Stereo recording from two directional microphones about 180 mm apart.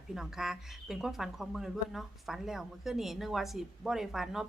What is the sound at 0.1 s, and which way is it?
Speech, 5° right (ahead or behind).